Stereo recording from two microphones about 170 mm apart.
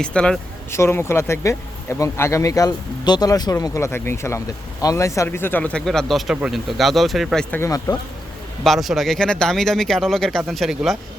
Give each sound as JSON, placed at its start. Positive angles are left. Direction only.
{"t": 0.0, "sound": "speech", "side_deg": 5}
{"t": 7.5, "sound": "speech", "side_deg": 20}
{"t": 8.6, "sound": "speech", "side_deg": 0}